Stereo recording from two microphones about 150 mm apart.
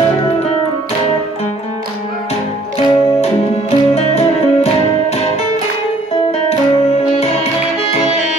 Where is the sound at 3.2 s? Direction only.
45° left (ahead or behind).